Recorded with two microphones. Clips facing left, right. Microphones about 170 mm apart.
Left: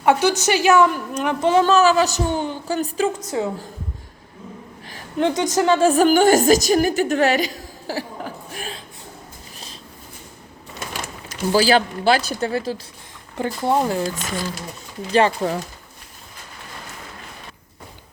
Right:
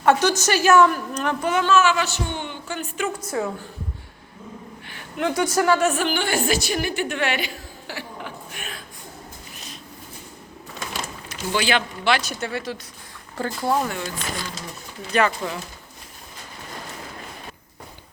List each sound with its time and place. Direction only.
0.0 s a woman's voice: 15° left (ahead or behind)
1.5 s a woman's voice: 35° left (ahead or behind)
3.2 s speech: 20° left (ahead or behind)
4.9 s a sound: 35° left (ahead or behind)
5.3 s a woman's voice: 20° left (ahead or behind); by 8.8 s 35° left (ahead or behind)
11.5 s a woman's voice: 35° left (ahead or behind)
13.3 s speech: 20° left (ahead or behind)
15.1 s a woman's voice: 35° left (ahead or behind)